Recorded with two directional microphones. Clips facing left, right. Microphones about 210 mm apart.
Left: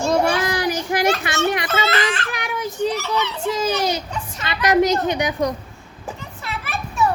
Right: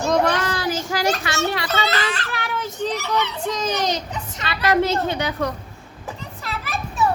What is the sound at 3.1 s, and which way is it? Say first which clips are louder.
A child's voice: left 1 dB; 10° left (ahead or behind).